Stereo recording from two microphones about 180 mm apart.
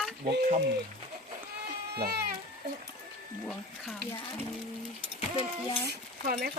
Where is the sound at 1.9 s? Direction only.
60° right (ahead or behind).